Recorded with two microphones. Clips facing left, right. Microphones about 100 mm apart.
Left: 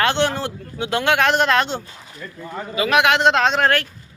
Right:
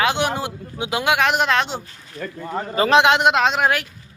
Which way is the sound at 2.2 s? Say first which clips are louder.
Right 6 dB; 70° right (ahead or behind).